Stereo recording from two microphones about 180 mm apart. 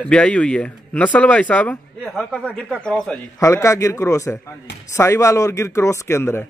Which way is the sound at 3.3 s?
15° left (ahead or behind).